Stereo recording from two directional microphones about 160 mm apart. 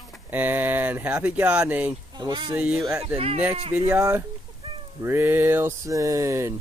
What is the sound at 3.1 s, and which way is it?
Speech, 35° right (ahead or behind).